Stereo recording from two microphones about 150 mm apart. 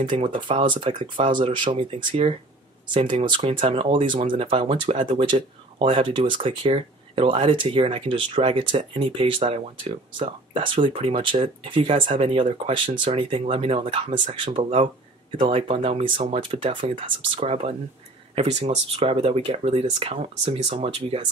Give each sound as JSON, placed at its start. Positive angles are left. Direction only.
{"t": 0.0, "sound": "speech", "side_deg": -35}